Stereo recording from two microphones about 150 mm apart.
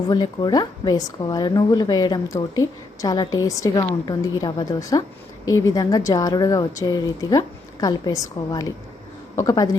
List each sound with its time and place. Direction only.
0.1 s a woman's voice: 30° left (ahead or behind)